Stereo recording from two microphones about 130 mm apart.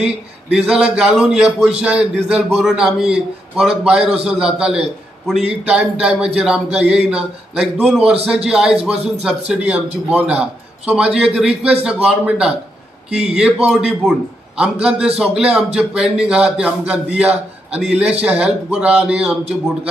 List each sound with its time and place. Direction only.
0.0 s a man's voice: 5° right (ahead or behind)
8.0 s a man's voice: 50° right (ahead or behind)
8.5 s a man's voice: 5° right (ahead or behind)